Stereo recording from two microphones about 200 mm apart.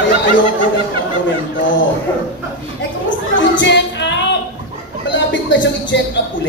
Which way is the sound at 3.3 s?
65° left (ahead or behind).